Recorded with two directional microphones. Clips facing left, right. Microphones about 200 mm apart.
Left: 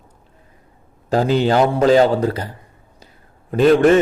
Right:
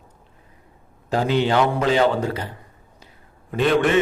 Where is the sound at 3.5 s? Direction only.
40° left (ahead or behind).